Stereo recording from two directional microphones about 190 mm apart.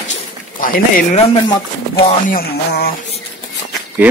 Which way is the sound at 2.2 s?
55° left (ahead or behind).